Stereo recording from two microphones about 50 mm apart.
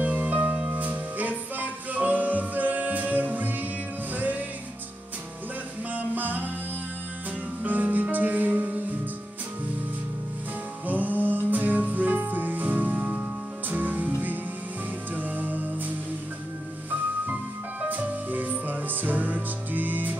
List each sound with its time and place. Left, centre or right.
0.0 s music: right
0.7 s music: right
5.9 s music: right
7.6 s music: right
10.9 s music: right
17.8 s music: right